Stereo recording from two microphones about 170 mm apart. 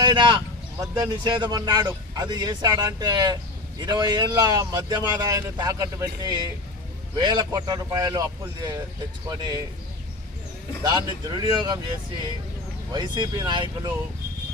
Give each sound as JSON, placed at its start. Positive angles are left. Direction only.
{"t": 0.0, "sound": "speech", "side_deg": -25}
{"t": 10.8, "sound": "speech", "side_deg": -25}